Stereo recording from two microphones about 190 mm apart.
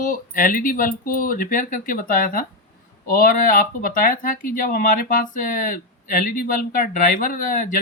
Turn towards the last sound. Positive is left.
turn(degrees=45)  # may be behind; listen again after turning